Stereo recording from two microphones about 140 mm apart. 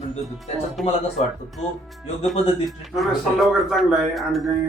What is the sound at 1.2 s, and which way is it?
Speech, 50° left (ahead or behind).